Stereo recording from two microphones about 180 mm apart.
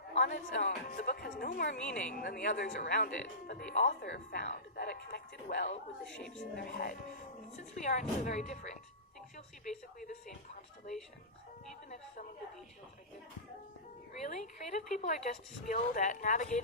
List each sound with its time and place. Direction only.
0.1 s speech: 45° left (ahead or behind)
4.0 s speech: 60° left (ahead or behind)
6.1 s speech: 5° left (ahead or behind)
6.6 s speech: 55° left (ahead or behind)
7.5 s a woman's voice: 40° left (ahead or behind)
10.0 s a woman's voice: 45° left (ahead or behind)
14.1 s a woman's voice: 40° left (ahead or behind)